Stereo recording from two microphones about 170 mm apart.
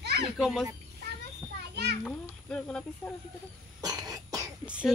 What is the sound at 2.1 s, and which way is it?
Speech, 5° left (ahead or behind).